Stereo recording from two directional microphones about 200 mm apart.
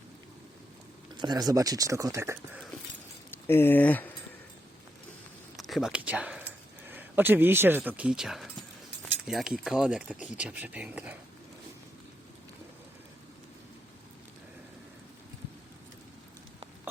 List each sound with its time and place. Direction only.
1.1 s speech: 20° right (ahead or behind)
3.4 s speech: 10° left (ahead or behind)
5.5 s speech: centre (ahead or behind)